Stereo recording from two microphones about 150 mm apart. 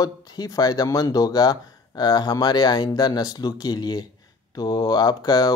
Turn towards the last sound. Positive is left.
turn(degrees=25)  # may be behind; listen again after turning